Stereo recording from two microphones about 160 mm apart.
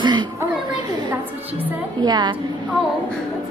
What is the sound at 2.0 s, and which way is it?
Speech, 25° right (ahead or behind).